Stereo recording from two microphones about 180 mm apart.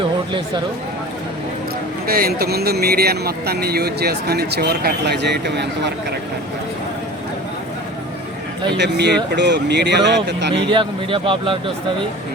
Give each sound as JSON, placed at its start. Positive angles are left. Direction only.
{"t": 2.0, "sound": "speech", "side_deg": -55}
{"t": 8.8, "sound": "speech", "side_deg": -70}
{"t": 10.7, "sound": "a man's voice", "side_deg": -25}